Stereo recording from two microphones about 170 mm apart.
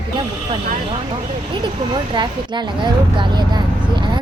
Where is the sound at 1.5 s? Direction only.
30° right (ahead or behind).